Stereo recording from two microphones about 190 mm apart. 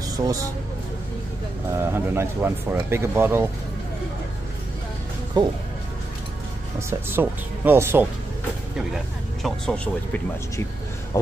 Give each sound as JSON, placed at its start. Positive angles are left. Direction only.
{"t": 0.2, "sound": "speech", "side_deg": -15}
{"t": 1.9, "sound": "speech", "side_deg": -10}
{"t": 5.4, "sound": "speech", "side_deg": -20}
{"t": 6.9, "sound": "speech", "side_deg": -10}
{"t": 8.7, "sound": "speech", "side_deg": 0}